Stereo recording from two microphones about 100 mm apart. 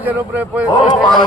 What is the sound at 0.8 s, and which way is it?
Speech, 45° left (ahead or behind).